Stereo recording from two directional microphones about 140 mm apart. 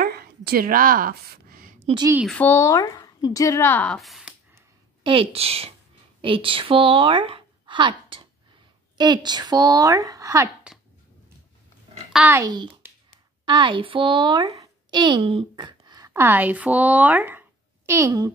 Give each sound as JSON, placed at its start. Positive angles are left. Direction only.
{"t": 0.0, "sound": "a sound", "side_deg": -90}
{"t": 2.2, "sound": "a woman's voice", "side_deg": 10}
{"t": 5.0, "sound": "a woman's voice", "side_deg": -40}
{"t": 12.3, "sound": "a woman's voice", "side_deg": -25}